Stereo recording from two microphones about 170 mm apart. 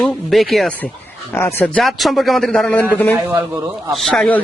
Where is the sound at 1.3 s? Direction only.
15° left (ahead or behind).